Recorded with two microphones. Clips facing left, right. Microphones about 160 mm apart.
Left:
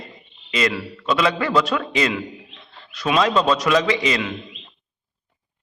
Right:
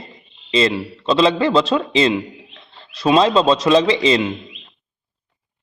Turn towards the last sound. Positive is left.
turn(degrees=-25)  # may be behind; listen again after turning